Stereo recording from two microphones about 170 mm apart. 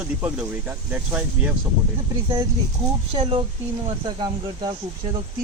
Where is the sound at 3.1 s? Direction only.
30° right (ahead or behind).